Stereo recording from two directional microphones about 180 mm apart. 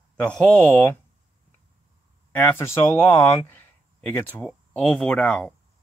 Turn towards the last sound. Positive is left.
turn(degrees=10)  # may be behind; listen again after turning